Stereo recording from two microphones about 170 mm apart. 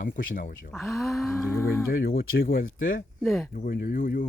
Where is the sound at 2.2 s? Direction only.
65° left (ahead or behind).